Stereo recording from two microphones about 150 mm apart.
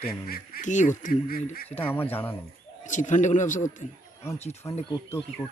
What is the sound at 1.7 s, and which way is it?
Speech, 15° left (ahead or behind).